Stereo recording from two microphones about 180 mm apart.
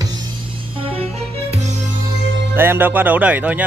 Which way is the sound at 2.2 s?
80° right.